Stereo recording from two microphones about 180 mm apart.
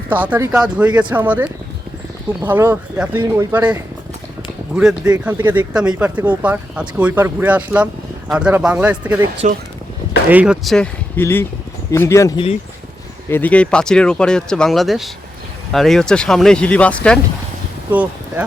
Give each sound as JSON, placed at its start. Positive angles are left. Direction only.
{"t": 0.1, "sound": "speech", "side_deg": -10}
{"t": 9.4, "sound": "speech", "side_deg": -40}
{"t": 10.2, "sound": "speech", "side_deg": -5}
{"t": 11.2, "sound": "speech", "side_deg": 10}
{"t": 13.3, "sound": "speech", "side_deg": 10}
{"t": 17.9, "sound": "speech", "side_deg": -10}